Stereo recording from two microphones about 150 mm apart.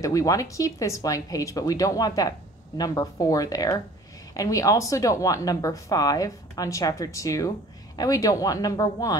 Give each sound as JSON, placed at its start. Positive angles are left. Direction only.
{"t": 0.0, "sound": "speech", "side_deg": 20}